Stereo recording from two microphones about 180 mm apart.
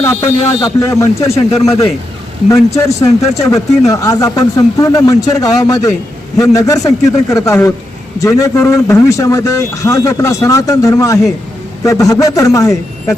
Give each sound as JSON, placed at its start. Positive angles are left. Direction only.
{"t": 0.0, "sound": "speech", "side_deg": 15}
{"t": 2.7, "sound": "speech", "side_deg": 15}